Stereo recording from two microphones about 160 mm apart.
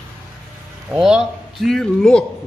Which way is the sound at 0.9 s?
5° right (ahead or behind).